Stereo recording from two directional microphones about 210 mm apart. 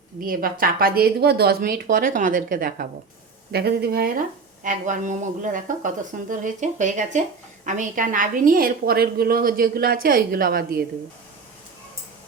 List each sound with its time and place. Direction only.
0.3 s a woman's voice: 45° right (ahead or behind)